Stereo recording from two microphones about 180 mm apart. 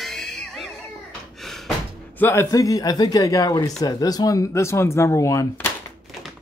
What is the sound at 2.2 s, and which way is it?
Speech, 15° left (ahead or behind).